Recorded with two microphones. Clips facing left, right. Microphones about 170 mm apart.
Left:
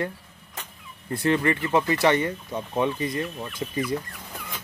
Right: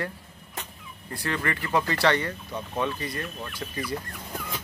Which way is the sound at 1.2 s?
20° left (ahead or behind).